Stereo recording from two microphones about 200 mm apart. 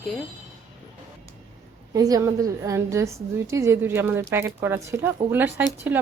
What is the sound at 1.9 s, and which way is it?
A woman's voice, 20° right (ahead or behind).